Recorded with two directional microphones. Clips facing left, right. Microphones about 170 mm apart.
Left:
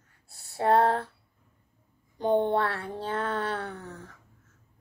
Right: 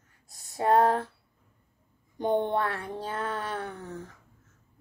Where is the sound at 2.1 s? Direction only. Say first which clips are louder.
Left 2 dB; 15° right (ahead or behind).